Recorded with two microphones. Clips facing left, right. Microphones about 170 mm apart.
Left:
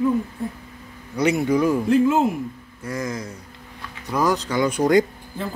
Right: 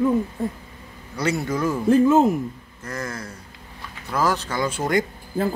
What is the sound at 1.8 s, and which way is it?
Speech, 45° right (ahead or behind).